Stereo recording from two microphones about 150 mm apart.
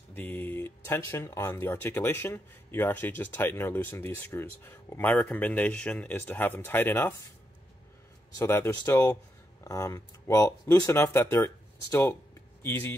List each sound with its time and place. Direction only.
0.1 s speech: 10° left (ahead or behind)
8.4 s speech: 15° left (ahead or behind)